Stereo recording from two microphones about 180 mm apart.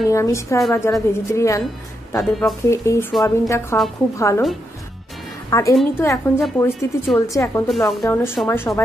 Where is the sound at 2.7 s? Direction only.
15° left (ahead or behind).